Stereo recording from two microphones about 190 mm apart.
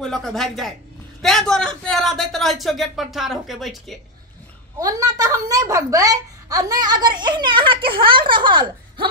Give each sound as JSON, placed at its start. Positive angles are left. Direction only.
{"t": 0.0, "sound": "a man's voice", "side_deg": 0}
{"t": 4.7, "sound": "a child's voice", "side_deg": -20}
{"t": 7.8, "sound": "speech", "side_deg": -50}
{"t": 8.1, "sound": "a child's voice", "side_deg": -25}